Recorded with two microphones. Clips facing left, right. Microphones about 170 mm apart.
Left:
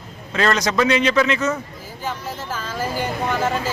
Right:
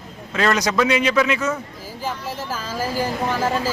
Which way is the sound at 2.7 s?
5° right (ahead or behind).